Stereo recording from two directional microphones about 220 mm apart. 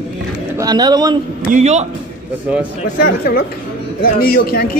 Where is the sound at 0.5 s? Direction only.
15° right (ahead or behind).